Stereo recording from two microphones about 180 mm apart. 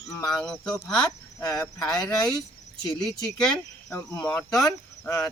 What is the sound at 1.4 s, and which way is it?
Speech, 20° left (ahead or behind).